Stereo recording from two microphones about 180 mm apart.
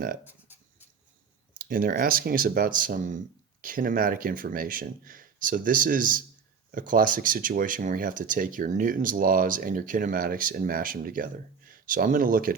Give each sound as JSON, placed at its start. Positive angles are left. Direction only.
{"t": 1.5, "sound": "speech", "side_deg": -50}